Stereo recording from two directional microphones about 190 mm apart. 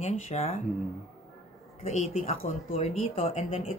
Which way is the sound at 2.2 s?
30° left (ahead or behind).